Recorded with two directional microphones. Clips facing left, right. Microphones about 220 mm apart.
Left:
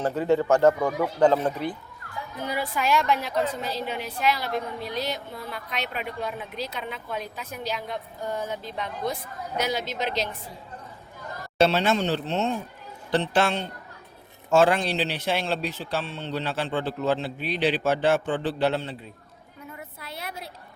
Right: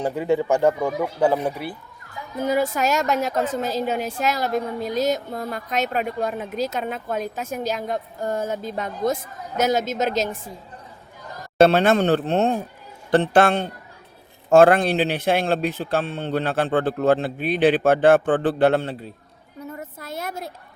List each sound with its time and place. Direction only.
0.0 s speech: 15° right (ahead or behind)
2.4 s a woman's voice: 45° right (ahead or behind)
11.6 s a woman's voice: 55° right (ahead or behind)
19.7 s a sound: 45° right (ahead or behind)